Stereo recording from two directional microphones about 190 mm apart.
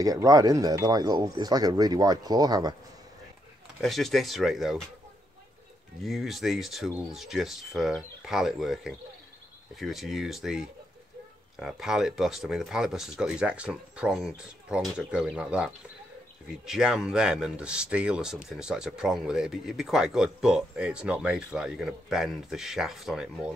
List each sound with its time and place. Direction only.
0.0 s speech: 20° right (ahead or behind)
3.8 s speech: centre (ahead or behind)
6.0 s speech: centre (ahead or behind)